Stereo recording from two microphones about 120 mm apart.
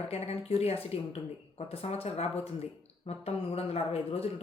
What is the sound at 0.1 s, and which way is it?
Speech, 60° left (ahead or behind).